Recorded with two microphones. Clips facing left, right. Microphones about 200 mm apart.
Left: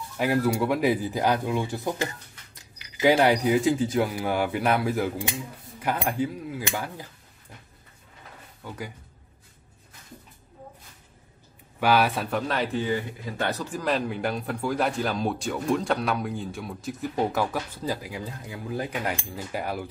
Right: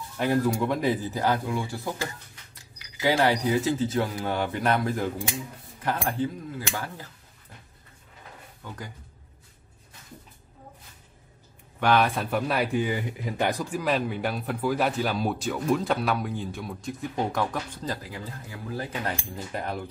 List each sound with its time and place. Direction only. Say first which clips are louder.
0.2 s speech: left 1 dB; 5° left (ahead or behind)
8.6 s speech: left 3 dB; 10° left (ahead or behind)
11.8 s speech: even; 5° left (ahead or behind)